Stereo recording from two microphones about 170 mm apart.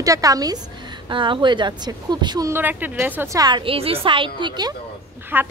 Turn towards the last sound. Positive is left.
turn(degrees=-10)  # may be behind; listen again after turning